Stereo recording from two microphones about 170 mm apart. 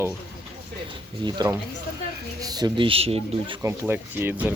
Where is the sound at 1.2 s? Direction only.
25° right (ahead or behind).